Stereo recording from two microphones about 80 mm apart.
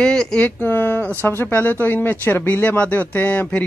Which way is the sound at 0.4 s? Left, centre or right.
Left.